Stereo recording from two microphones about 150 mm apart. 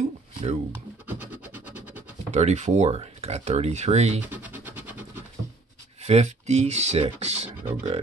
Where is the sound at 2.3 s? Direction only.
50° right (ahead or behind).